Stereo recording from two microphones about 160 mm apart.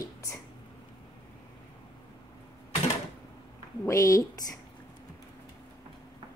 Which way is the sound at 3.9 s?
20° left (ahead or behind).